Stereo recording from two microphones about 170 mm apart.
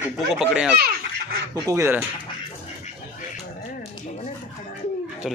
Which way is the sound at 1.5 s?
20° right (ahead or behind).